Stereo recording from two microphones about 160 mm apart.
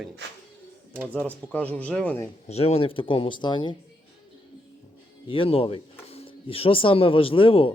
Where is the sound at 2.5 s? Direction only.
40° left (ahead or behind).